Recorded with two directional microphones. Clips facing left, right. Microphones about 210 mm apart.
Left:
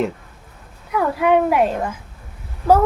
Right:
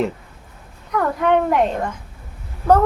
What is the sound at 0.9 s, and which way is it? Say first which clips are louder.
A child's voice: left 1 dB; 5° left (ahead or behind).